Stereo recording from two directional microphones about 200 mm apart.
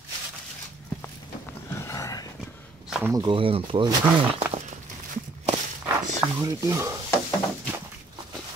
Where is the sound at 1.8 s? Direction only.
15° left (ahead or behind).